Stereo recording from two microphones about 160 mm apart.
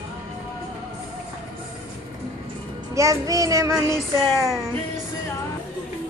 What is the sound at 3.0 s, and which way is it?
Child singing, 20° right (ahead or behind).